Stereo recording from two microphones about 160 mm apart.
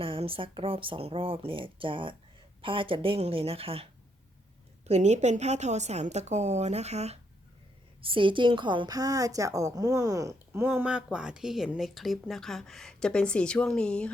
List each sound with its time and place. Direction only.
0.0 s speech: 35° right (ahead or behind)
4.9 s a woman's voice: 45° right (ahead or behind)
8.0 s a woman's voice: 30° right (ahead or behind); by 14.1 s 5° left (ahead or behind)